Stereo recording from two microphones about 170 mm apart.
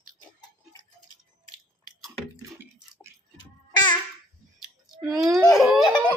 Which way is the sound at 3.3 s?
25° left (ahead or behind).